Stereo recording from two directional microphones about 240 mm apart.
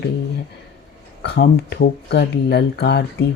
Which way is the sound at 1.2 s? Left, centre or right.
Left.